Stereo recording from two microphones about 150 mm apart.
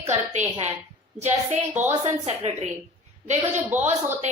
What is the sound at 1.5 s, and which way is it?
Speech, 15° right (ahead or behind).